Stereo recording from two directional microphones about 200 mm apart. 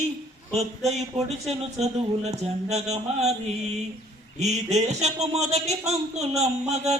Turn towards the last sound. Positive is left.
turn(degrees=-35)  # may be behind; listen again after turning